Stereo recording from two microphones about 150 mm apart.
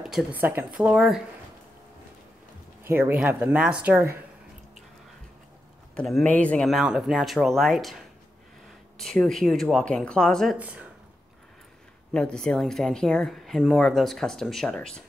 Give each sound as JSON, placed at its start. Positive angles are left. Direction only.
{"t": 0.0, "sound": "speech", "side_deg": -5}
{"t": 2.8, "sound": "speech", "side_deg": -15}
{"t": 5.9, "sound": "speech", "side_deg": 5}
{"t": 10.6, "sound": "speech", "side_deg": -10}
{"t": 12.1, "sound": "speech", "side_deg": 5}